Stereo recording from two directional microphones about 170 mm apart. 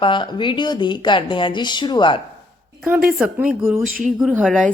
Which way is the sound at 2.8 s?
5° right (ahead or behind).